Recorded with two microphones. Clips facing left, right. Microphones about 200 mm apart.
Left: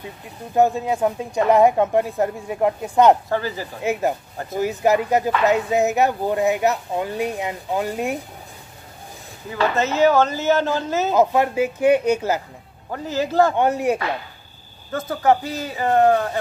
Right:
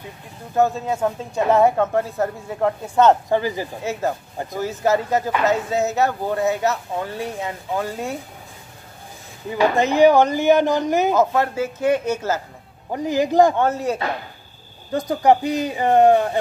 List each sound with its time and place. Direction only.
0.6 s speech: 15° left (ahead or behind)
3.3 s speech: 15° right (ahead or behind)
3.8 s speech: 15° left (ahead or behind)
9.5 s speech: 15° right (ahead or behind)
11.1 s speech: 15° left (ahead or behind)
12.9 s speech: 15° right (ahead or behind)
13.6 s speech: 15° left (ahead or behind)
14.9 s speech: 15° right (ahead or behind)